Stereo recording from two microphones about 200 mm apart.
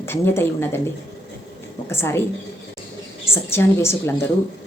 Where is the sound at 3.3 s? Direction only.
10° left (ahead or behind).